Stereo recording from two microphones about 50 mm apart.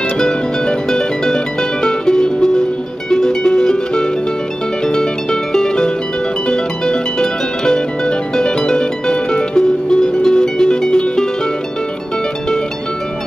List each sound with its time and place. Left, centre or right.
0.2 s music: centre